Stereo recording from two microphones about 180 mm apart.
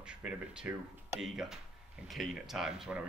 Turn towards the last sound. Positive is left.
turn(degrees=-5)  # may be behind; listen again after turning